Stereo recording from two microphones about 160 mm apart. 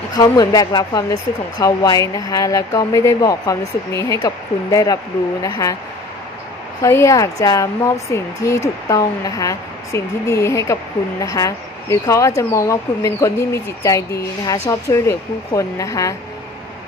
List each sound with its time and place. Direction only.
0.2 s speech: 25° left (ahead or behind)
6.8 s speech: 15° left (ahead or behind)